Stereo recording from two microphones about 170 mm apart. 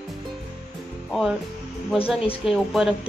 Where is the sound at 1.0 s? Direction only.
Centre (ahead or behind).